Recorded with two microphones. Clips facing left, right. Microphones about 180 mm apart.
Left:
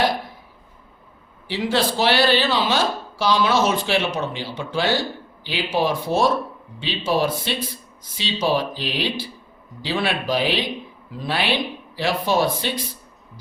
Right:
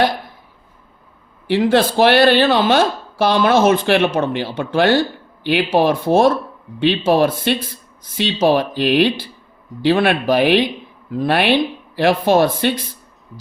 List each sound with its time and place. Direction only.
1.5 s speech: 55° right (ahead or behind)